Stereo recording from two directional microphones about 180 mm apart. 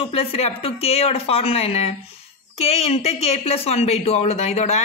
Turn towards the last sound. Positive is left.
turn(degrees=40)  # may be behind; listen again after turning